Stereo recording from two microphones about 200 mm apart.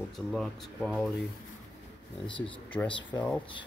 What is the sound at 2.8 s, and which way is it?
Speech, 25° left (ahead or behind).